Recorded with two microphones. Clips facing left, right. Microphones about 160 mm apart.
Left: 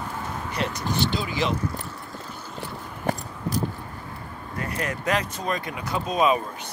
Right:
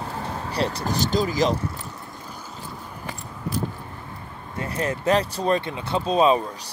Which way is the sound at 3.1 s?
40° left (ahead or behind).